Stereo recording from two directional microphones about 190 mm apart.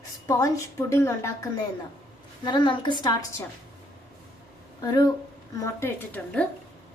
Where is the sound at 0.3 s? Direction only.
20° left (ahead or behind).